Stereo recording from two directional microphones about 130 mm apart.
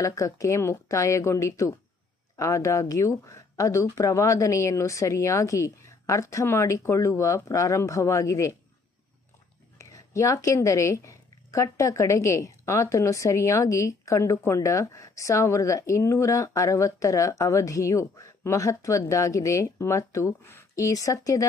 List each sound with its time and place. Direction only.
0.0 s a woman's voice: 25° left (ahead or behind)
9.8 s a woman's voice: 25° left (ahead or behind)